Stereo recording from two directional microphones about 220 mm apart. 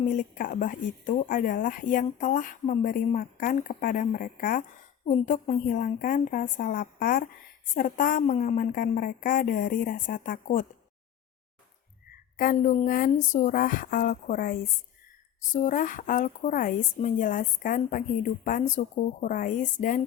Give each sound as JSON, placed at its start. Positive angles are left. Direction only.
{"t": 0.0, "sound": "a woman's voice", "side_deg": 35}
{"t": 12.4, "sound": "a woman's voice", "side_deg": 40}